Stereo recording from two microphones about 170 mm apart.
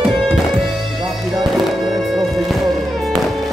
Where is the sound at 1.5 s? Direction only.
Centre (ahead or behind).